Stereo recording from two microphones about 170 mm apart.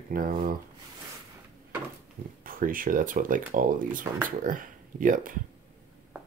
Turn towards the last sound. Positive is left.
turn(degrees=-50)  # may be behind; listen again after turning